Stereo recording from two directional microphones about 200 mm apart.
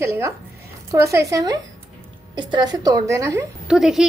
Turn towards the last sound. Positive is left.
turn(degrees=0)  # may be behind; listen again after turning